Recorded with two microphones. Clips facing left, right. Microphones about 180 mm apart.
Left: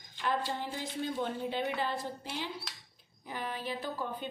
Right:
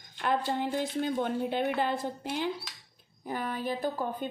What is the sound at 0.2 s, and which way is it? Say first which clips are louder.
A woman's voice: right 5 dB; 55° right (ahead or behind).